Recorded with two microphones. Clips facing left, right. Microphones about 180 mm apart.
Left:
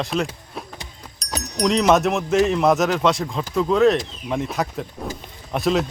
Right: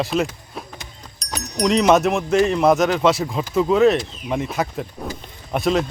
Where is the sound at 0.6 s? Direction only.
Centre (ahead or behind).